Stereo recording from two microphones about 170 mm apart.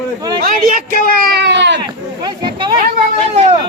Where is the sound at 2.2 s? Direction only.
25° right (ahead or behind).